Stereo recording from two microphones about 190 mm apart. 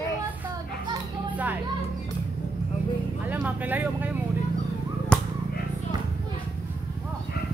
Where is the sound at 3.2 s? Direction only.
10° right (ahead or behind).